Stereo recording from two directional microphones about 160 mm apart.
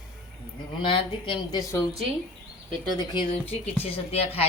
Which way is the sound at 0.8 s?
30° left (ahead or behind).